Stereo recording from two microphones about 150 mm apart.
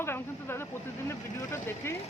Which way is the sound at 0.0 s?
15° left (ahead or behind).